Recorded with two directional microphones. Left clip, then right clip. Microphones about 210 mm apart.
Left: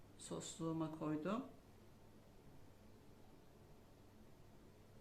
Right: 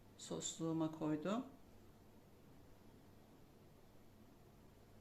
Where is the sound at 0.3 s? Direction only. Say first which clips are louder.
Right 2 dB; 25° right (ahead or behind).